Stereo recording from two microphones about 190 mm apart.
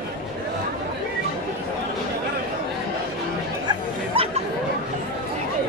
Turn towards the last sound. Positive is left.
turn(degrees=-30)  # may be behind; listen again after turning